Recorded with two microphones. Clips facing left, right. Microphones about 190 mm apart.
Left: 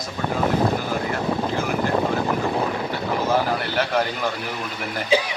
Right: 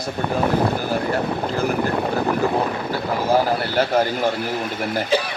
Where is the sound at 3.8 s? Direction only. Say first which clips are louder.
Right 5 dB; 30° right (ahead or behind).